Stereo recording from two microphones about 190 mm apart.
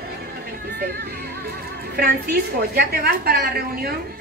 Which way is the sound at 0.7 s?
60° right (ahead or behind).